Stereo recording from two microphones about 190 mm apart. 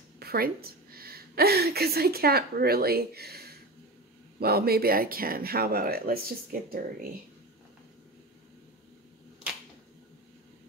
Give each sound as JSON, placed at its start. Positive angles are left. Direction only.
{"t": 0.2, "sound": "a woman's voice", "side_deg": -55}